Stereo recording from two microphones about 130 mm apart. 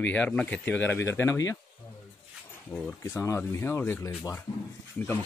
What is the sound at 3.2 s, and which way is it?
A man's voice, 20° left (ahead or behind).